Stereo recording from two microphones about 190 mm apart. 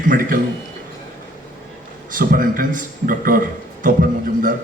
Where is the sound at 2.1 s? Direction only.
45° right (ahead or behind).